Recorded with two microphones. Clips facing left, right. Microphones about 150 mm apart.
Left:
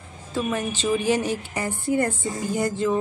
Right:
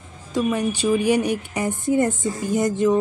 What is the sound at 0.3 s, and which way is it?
A woman's voice, 15° right (ahead or behind).